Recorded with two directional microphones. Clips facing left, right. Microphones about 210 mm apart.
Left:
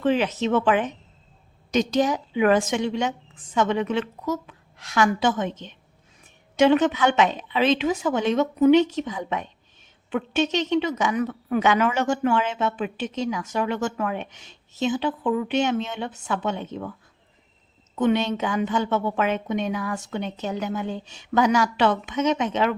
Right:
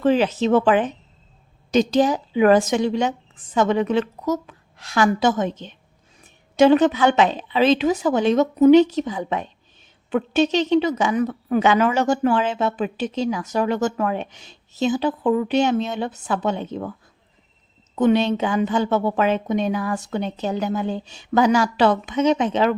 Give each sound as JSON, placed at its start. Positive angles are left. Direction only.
{"t": 0.0, "sound": "a woman's voice", "side_deg": -35}
{"t": 17.9, "sound": "a woman's voice", "side_deg": -35}